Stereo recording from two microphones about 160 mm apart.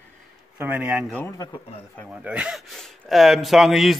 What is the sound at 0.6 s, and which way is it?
Speech, 10° right (ahead or behind).